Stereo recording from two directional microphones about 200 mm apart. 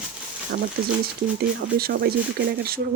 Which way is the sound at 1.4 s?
50° right (ahead or behind).